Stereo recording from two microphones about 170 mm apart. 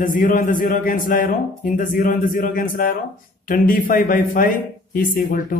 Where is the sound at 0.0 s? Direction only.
55° left (ahead or behind).